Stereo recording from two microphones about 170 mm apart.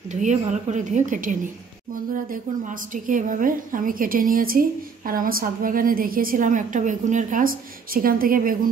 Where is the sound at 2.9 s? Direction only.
50° right (ahead or behind).